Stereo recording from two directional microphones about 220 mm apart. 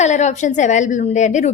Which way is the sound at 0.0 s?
30° left (ahead or behind).